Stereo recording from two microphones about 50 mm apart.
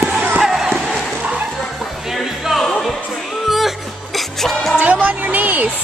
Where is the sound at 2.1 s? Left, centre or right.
Centre.